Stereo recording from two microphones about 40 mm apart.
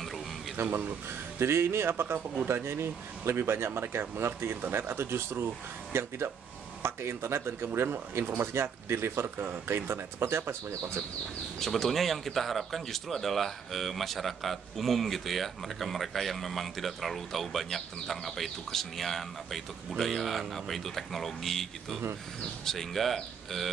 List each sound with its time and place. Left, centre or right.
0.6 s speech: right
5.9 s speech: right
11.6 s speech: centre